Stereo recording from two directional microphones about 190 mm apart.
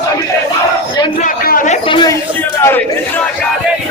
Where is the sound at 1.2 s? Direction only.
45° left (ahead or behind).